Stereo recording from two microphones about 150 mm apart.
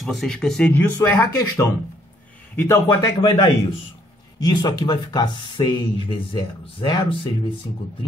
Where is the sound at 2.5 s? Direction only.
20° left (ahead or behind).